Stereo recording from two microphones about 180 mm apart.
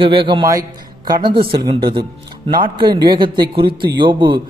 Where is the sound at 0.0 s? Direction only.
30° right (ahead or behind).